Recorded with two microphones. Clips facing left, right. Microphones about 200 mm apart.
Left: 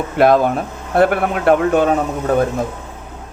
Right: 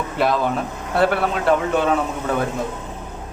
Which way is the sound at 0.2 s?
55° left (ahead or behind).